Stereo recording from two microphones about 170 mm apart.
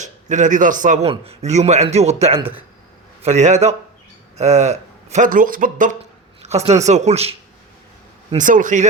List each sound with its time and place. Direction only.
0.0 s a man's voice: 45° right (ahead or behind)
1.0 s speech: 35° right (ahead or behind)
6.4 s a sound: 40° right (ahead or behind)
6.8 s speech: 40° right (ahead or behind)
8.4 s speech: 50° right (ahead or behind)